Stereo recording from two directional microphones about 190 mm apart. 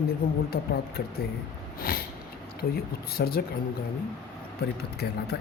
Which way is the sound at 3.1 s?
55° left (ahead or behind).